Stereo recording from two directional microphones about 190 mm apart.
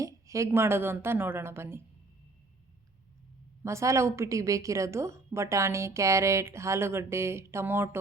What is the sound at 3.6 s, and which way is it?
A woman's voice, 15° right (ahead or behind).